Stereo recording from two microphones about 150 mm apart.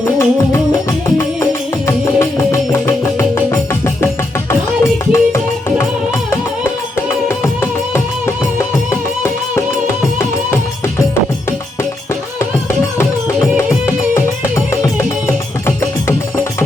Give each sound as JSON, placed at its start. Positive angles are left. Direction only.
{"t": 0.0, "sound": "music", "side_deg": 20}
{"t": 7.3, "sound": "music", "side_deg": 20}
{"t": 13.6, "sound": "music", "side_deg": 20}